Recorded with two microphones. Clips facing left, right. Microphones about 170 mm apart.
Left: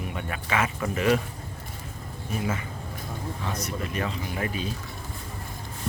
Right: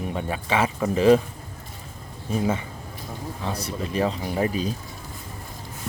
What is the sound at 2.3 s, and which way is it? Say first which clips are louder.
A man's voice: right 6 dB; 30° right (ahead or behind).